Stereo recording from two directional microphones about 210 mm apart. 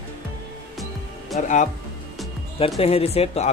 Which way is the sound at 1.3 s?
35° left (ahead or behind).